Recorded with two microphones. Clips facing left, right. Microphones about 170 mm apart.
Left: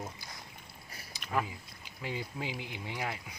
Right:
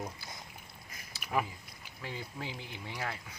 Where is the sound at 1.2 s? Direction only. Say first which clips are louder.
Even; 10° right (ahead or behind).